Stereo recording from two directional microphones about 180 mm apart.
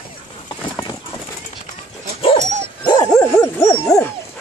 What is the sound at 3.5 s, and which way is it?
Dog, 15° left (ahead or behind).